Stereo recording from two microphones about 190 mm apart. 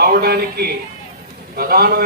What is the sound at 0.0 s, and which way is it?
A man's voice, 55° right (ahead or behind).